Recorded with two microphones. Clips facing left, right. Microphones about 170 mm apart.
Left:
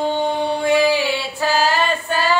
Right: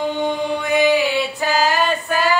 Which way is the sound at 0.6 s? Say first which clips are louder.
Left 2 dB; 30° left (ahead or behind).